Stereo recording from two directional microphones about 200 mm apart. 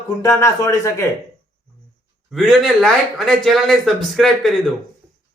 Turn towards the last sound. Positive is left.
turn(degrees=0)  # may be behind; listen again after turning